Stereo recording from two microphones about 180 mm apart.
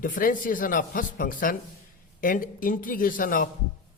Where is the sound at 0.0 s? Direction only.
50° left (ahead or behind).